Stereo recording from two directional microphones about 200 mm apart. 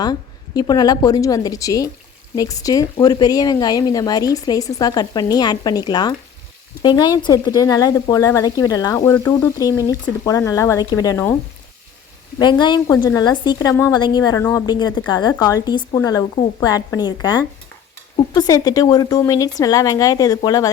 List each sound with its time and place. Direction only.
0.0 s speech: 20° left (ahead or behind)
12.4 s speech: 20° left (ahead or behind)